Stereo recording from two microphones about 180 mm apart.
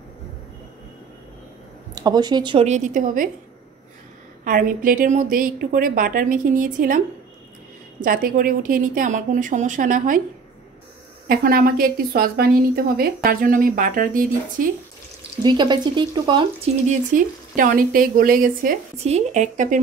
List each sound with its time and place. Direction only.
2.0 s speech: 20° right (ahead or behind)
2.7 s a woman's voice: 45° right (ahead or behind)
4.5 s a woman's voice: 50° right (ahead or behind)
8.0 s a woman's voice: 50° right (ahead or behind)
11.2 s a woman's voice: 55° right (ahead or behind)
15.4 s speech: 25° right (ahead or behind)
16.8 s a woman's voice: 45° right (ahead or behind)
19.0 s speech: 40° right (ahead or behind)